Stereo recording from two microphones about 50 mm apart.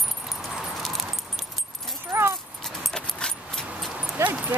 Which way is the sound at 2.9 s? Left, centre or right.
Centre.